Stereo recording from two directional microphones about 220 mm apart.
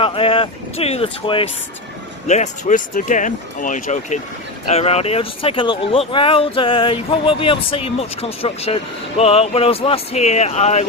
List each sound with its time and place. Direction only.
0.0 s speech: 25° left (ahead or behind)